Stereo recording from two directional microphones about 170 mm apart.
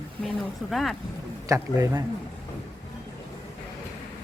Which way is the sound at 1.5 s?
15° right (ahead or behind).